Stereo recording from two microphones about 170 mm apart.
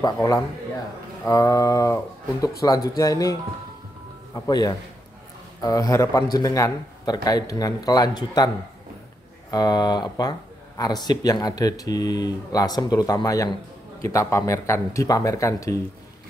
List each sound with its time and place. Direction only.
0.0 s a man's voice: 20° left (ahead or behind)
9.5 s a man's voice: 25° left (ahead or behind)